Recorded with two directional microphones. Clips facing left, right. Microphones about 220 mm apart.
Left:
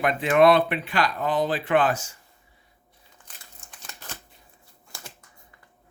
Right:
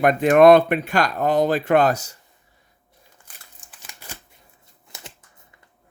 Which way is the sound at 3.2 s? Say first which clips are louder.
Left 5 dB; 10° right (ahead or behind).